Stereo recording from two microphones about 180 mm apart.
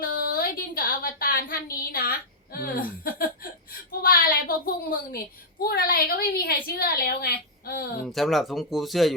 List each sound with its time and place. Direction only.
0.0 s a sound: 55° left (ahead or behind)
5.6 s a woman's voice: 55° left (ahead or behind)
8.0 s speech: centre (ahead or behind)